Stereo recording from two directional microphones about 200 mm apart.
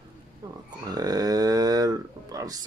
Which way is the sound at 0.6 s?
20° right (ahead or behind).